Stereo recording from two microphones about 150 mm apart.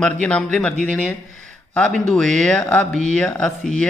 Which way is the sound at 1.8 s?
5° left (ahead or behind).